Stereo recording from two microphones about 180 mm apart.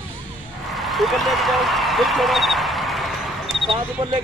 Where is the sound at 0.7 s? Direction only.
Centre (ahead or behind).